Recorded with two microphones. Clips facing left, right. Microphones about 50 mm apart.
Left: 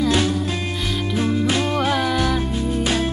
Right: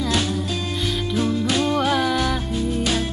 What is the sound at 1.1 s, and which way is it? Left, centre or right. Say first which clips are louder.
Music: left 1 dB; left.